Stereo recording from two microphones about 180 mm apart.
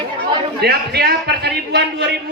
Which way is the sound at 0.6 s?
60° right (ahead or behind).